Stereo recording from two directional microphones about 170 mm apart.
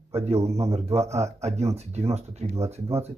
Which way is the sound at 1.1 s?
40° right (ahead or behind).